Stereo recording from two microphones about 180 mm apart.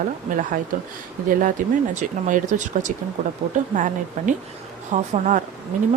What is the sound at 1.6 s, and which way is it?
Speech, 50° right (ahead or behind).